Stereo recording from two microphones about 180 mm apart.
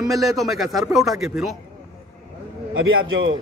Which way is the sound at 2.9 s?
90° right.